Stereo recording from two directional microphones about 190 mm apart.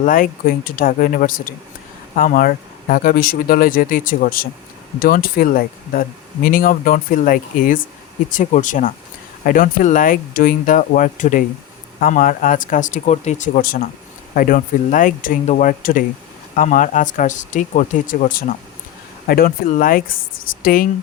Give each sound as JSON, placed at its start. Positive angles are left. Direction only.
{"t": 0.0, "sound": "speech", "side_deg": 45}